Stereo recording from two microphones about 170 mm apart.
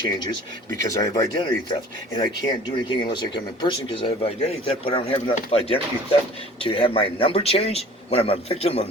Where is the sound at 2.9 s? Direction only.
25° left (ahead or behind).